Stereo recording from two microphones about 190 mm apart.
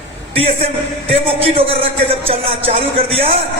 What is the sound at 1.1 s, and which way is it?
A man's voice, 30° right (ahead or behind).